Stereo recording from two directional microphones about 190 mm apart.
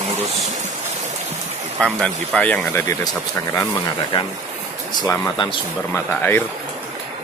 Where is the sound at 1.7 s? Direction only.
5° left (ahead or behind).